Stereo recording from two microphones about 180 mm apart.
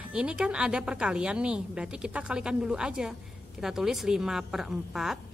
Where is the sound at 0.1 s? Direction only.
5° right (ahead or behind).